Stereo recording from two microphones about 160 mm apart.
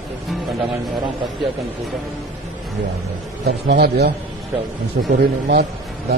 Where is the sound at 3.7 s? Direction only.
90° right.